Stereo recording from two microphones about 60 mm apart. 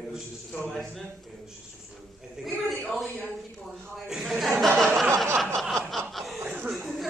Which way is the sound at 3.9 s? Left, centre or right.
Centre.